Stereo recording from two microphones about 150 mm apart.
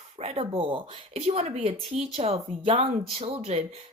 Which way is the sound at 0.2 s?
40° right (ahead or behind).